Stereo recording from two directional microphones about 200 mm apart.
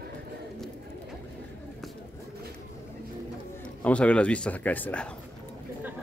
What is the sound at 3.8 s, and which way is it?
Speech, 5° left (ahead or behind).